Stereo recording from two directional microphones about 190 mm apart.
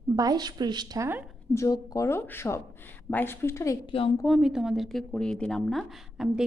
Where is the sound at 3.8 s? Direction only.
30° left (ahead or behind).